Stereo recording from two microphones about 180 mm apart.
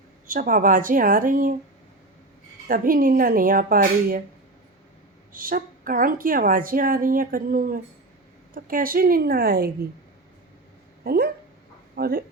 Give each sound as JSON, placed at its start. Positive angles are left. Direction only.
{"t": 0.3, "sound": "speech", "side_deg": -50}
{"t": 2.6, "sound": "speech", "side_deg": -50}
{"t": 5.3, "sound": "speech", "side_deg": -50}
{"t": 11.0, "sound": "speech", "side_deg": -60}